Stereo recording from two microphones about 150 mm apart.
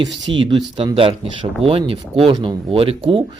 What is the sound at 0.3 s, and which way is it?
Speech, 30° right (ahead or behind).